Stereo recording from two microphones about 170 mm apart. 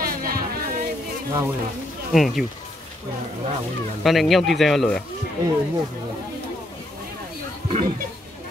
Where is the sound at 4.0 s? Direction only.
Centre (ahead or behind).